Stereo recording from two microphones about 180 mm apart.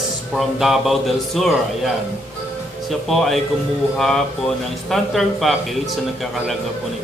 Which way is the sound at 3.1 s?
Centre (ahead or behind).